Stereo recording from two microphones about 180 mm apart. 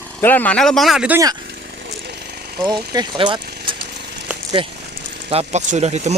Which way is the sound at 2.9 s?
25° right (ahead or behind).